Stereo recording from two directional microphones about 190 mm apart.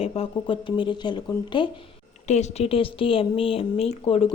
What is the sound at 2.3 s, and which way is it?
A woman's voice, 35° left (ahead or behind).